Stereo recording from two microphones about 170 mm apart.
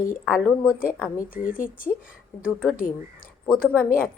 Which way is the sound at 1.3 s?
55° left (ahead or behind).